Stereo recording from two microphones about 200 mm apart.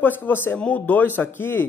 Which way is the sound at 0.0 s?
10° left (ahead or behind).